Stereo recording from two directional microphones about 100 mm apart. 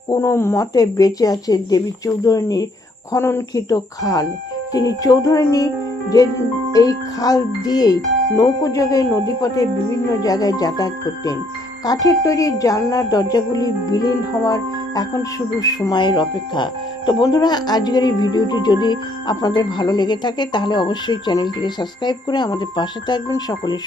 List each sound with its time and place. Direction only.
0.1 s speech: 25° left (ahead or behind)
3.1 s speech: 25° left (ahead or behind)
16.0 s speech: 50° left (ahead or behind)
23.3 s speech: 40° left (ahead or behind)